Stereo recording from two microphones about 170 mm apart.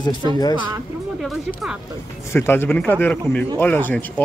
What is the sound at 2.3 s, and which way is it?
Speech, 15° left (ahead or behind).